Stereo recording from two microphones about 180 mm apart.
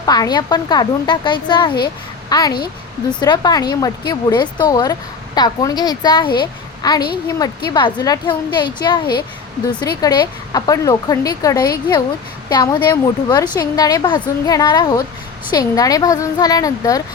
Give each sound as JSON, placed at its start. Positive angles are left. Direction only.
{"t": 0.0, "sound": "speech", "side_deg": 20}